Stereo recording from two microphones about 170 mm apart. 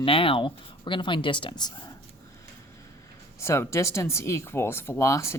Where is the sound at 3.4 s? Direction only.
15° left (ahead or behind).